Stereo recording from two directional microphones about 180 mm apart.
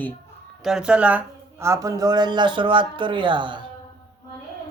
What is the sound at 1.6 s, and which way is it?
Speech, 15° right (ahead or behind).